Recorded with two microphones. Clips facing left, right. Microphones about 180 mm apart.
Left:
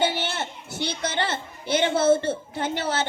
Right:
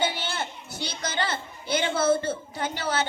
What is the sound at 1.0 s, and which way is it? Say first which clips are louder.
A woman's voice: even; 25° left (ahead or behind).